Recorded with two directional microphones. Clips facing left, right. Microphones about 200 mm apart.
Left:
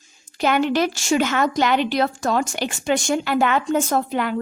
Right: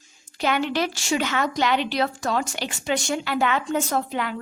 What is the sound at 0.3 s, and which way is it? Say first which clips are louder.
A woman's voice: left 4 dB; 45° left (ahead or behind).